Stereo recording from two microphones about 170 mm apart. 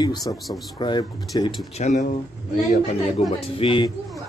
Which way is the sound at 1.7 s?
45° left (ahead or behind).